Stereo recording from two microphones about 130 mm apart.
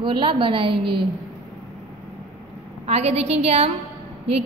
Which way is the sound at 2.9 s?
55° right (ahead or behind).